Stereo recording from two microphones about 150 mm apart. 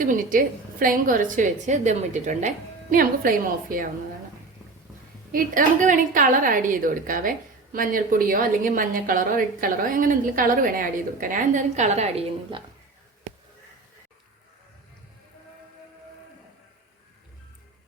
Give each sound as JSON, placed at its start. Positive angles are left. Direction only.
{"t": 0.0, "sound": "a woman's voice", "side_deg": -65}
{"t": 2.9, "sound": "a woman's voice", "side_deg": -70}
{"t": 5.3, "sound": "a woman's voice", "side_deg": -65}